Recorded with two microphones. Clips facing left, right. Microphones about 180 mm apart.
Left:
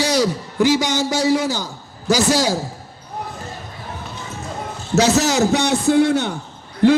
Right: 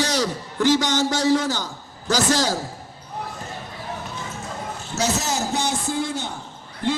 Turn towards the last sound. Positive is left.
turn(degrees=65)  # may be behind; listen again after turning